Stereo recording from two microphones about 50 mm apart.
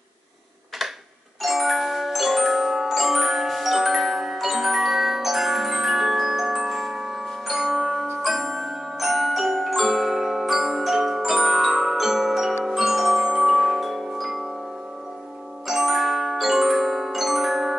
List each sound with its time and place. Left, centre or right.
1.4 s glockenspiel: centre
15.6 s glockenspiel: centre